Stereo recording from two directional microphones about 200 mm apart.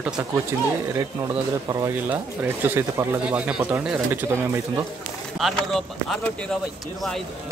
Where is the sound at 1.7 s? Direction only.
15° right (ahead or behind).